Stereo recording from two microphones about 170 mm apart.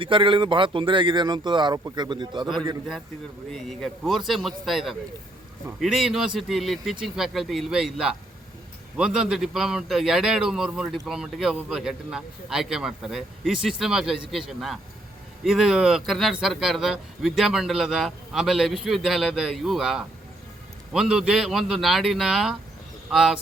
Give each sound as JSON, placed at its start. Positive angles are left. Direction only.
{"t": 0.0, "sound": "a man's voice", "side_deg": -30}
{"t": 3.5, "sound": "a man's voice", "side_deg": 5}